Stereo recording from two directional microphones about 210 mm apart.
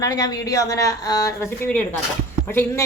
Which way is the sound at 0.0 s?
20° left (ahead or behind).